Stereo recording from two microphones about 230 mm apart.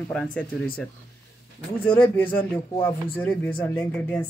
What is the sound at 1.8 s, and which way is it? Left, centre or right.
Speech, centre.